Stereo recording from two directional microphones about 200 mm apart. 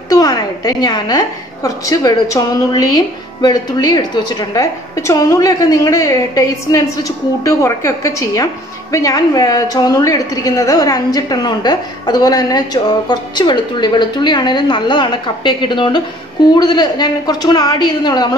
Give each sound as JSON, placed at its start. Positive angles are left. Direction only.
{"t": 0.1, "sound": "a woman's voice", "side_deg": 20}